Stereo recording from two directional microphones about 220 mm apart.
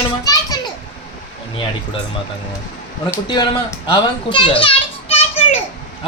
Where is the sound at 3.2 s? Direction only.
20° left (ahead or behind).